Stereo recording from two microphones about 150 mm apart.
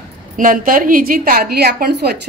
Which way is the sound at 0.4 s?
65° right (ahead or behind).